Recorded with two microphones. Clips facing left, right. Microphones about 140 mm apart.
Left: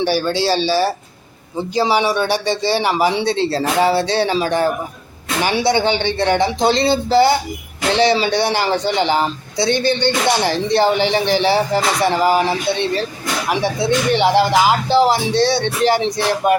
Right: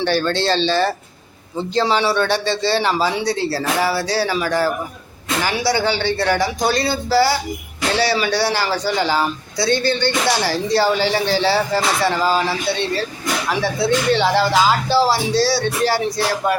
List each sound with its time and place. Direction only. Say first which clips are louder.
0.0 s a man's voice: left 1 dB; 10° left (ahead or behind)